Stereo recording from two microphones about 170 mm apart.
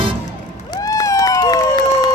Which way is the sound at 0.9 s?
20° left (ahead or behind).